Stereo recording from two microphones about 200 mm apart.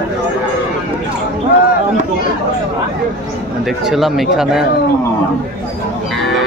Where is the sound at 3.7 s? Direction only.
Centre (ahead or behind).